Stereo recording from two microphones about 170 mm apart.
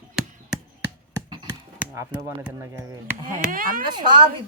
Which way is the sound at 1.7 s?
10° right (ahead or behind).